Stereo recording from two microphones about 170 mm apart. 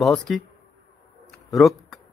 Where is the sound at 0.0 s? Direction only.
Centre (ahead or behind).